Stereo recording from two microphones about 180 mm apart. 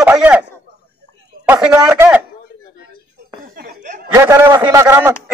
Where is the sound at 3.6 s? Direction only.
50° right (ahead or behind).